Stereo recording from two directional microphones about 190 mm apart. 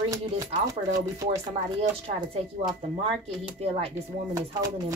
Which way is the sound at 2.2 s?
35° right (ahead or behind).